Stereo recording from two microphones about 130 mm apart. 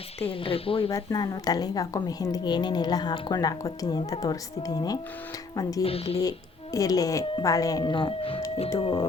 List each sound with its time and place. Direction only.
0.2 s speech: 45° left (ahead or behind)
0.9 s a woman's voice: 30° left (ahead or behind)
5.8 s speech: 50° left (ahead or behind)
6.7 s a woman's voice: 30° left (ahead or behind)
7.9 s speech: 40° left (ahead or behind)